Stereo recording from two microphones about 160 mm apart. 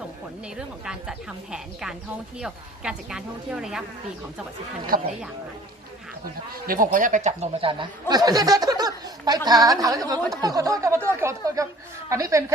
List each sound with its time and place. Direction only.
0.5 s speech: 5° right (ahead or behind)
4.9 s speech: 60° right (ahead or behind)
6.7 s speech: 60° right (ahead or behind); by 12.5 s 20° right (ahead or behind)